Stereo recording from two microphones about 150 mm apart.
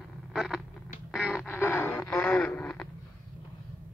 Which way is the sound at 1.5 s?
15° left (ahead or behind).